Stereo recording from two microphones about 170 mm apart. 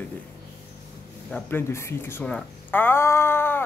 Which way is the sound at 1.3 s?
15° left (ahead or behind).